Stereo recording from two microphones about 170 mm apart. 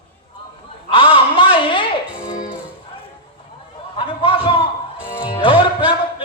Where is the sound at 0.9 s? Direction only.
30° left (ahead or behind).